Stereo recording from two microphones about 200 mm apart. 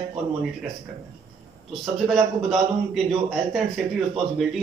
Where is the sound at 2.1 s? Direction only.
Centre (ahead or behind).